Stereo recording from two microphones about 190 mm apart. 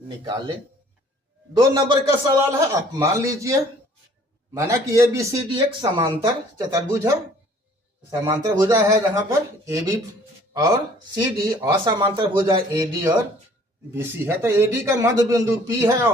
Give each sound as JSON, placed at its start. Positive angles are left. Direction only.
{"t": 1.5, "sound": "a man's voice", "side_deg": -20}
{"t": 8.1, "sound": "a man's voice", "side_deg": -20}